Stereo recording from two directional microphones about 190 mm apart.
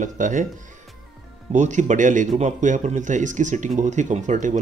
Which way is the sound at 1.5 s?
40° right (ahead or behind).